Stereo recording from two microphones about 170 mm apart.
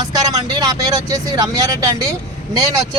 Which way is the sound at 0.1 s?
20° right (ahead or behind).